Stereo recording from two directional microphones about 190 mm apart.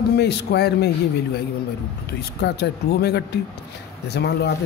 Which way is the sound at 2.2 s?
60° left (ahead or behind).